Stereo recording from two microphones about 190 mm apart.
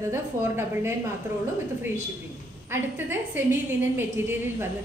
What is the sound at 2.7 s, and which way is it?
A woman's voice, 10° right (ahead or behind).